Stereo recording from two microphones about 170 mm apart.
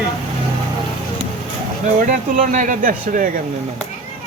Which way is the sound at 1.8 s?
50° right (ahead or behind).